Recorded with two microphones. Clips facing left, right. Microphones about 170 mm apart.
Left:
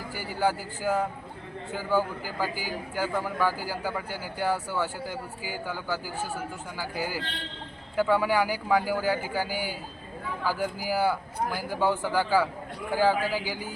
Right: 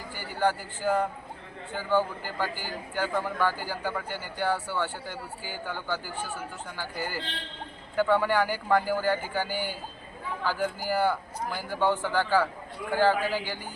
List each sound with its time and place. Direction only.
0.1 s a man's voice: 10° left (ahead or behind)